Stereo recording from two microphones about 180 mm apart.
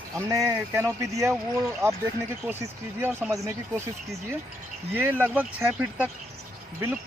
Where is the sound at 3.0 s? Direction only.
10° right (ahead or behind).